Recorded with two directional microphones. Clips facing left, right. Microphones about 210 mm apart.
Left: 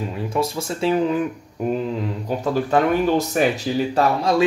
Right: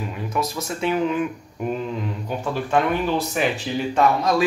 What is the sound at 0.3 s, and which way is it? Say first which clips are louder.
Speech: left 3 dB; 30° left (ahead or behind).